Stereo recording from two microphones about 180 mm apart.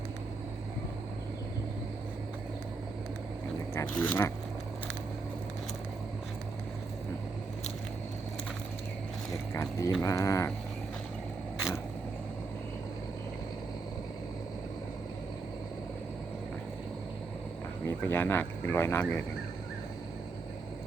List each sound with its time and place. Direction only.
3.8 s speech: 10° left (ahead or behind)
9.3 s a sound: 15° left (ahead or behind)
17.8 s speech: 10° left (ahead or behind)